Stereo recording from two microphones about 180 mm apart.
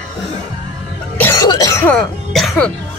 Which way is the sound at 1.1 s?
15° left (ahead or behind).